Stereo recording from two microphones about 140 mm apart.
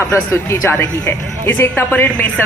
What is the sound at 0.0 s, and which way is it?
Speech, 15° left (ahead or behind).